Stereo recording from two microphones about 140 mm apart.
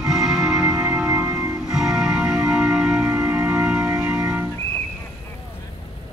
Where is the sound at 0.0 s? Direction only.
Centre (ahead or behind).